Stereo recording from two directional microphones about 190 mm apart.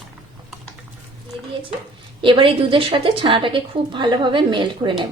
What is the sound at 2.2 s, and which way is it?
A woman's voice, 25° right (ahead or behind).